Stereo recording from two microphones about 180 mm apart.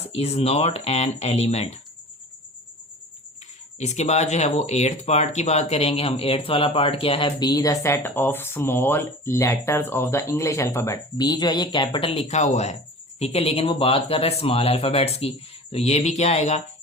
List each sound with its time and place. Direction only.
0.0 s speech: 35° left (ahead or behind)
3.8 s speech: 40° left (ahead or behind)